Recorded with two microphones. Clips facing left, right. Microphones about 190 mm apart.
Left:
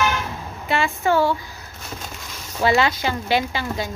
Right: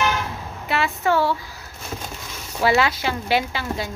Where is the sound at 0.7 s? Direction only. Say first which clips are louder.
Left 1 dB; centre (ahead or behind).